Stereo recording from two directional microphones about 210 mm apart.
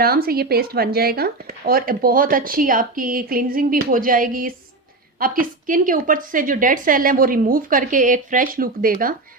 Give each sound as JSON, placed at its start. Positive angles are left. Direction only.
{"t": 0.0, "sound": "a woman's voice", "side_deg": -45}